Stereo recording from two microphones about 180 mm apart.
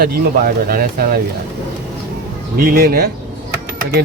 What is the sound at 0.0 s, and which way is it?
Speech, 50° right (ahead or behind).